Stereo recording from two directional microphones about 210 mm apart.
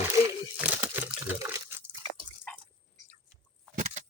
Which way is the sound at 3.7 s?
35° right (ahead or behind).